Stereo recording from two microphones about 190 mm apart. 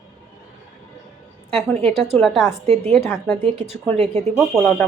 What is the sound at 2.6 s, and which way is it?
Speech, 35° right (ahead or behind).